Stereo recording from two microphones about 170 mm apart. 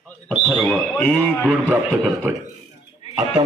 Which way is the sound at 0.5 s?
Centre (ahead or behind).